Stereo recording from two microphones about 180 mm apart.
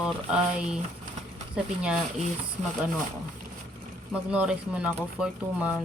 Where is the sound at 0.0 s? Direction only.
5° right (ahead or behind).